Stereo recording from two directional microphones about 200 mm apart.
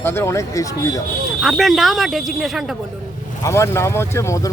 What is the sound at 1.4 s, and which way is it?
Speech, centre (ahead or behind).